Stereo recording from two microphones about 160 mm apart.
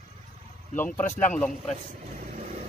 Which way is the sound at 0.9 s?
15° left (ahead or behind).